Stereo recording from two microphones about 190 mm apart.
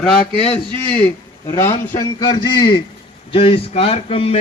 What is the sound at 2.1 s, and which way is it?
A man's voice, 25° left (ahead or behind).